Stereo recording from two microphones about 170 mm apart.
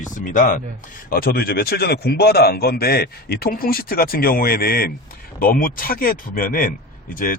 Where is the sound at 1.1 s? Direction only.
60° left (ahead or behind).